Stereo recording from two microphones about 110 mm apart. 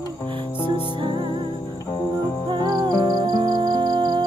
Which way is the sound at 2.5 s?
40° right (ahead or behind).